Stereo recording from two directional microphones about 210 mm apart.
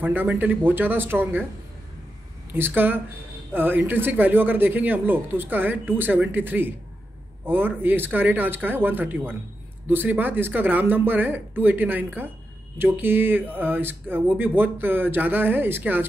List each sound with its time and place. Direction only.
0.0 s speech: 10° right (ahead or behind)
2.5 s speech: 10° right (ahead or behind)